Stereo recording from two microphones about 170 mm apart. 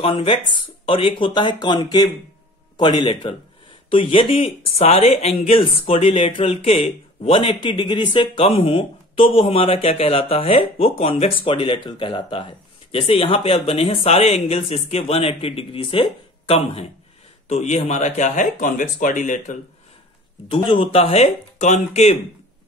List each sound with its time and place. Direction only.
0.0 s speech: 30° left (ahead or behind)
20.4 s speech: 30° left (ahead or behind)